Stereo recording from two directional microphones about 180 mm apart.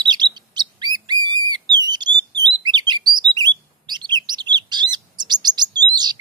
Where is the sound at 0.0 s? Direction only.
25° right (ahead or behind).